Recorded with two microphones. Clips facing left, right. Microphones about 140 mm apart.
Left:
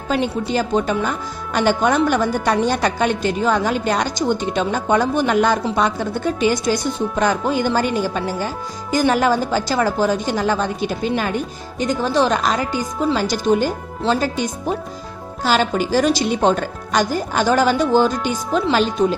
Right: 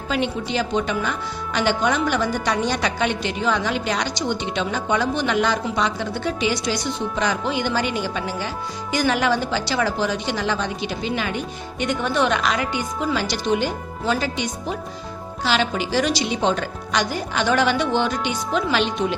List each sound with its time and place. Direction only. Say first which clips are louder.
0.1 s a woman's voice: left 4 dB; 40° left (ahead or behind)